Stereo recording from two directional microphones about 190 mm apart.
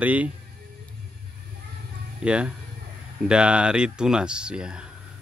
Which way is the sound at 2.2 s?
5° right (ahead or behind).